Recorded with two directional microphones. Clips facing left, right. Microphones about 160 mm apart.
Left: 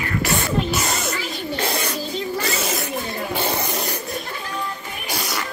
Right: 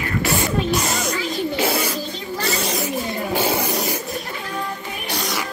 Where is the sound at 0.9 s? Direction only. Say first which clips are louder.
Right 3 dB; centre (ahead or behind).